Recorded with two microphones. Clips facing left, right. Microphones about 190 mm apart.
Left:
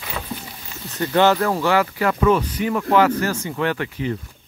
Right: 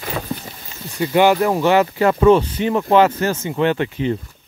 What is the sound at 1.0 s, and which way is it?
Speech, 15° right (ahead or behind).